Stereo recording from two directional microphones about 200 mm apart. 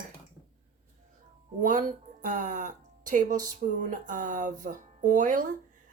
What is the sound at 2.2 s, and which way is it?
Speech, 40° right (ahead or behind).